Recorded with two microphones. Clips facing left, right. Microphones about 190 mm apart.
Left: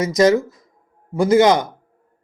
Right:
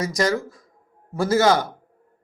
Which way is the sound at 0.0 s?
20° left (ahead or behind).